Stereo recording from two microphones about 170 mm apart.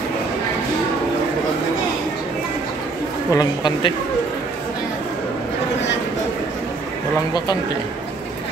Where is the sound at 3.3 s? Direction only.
25° left (ahead or behind).